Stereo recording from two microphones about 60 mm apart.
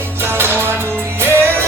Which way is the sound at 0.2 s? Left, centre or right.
Right.